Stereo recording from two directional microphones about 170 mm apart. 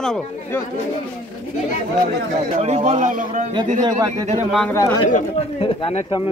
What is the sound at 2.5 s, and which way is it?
Speech, 40° right (ahead or behind).